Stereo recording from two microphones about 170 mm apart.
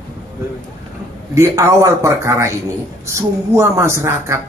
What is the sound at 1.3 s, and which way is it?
Speech, 15° right (ahead or behind).